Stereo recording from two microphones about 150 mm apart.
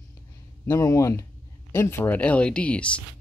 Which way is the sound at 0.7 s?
20° left (ahead or behind).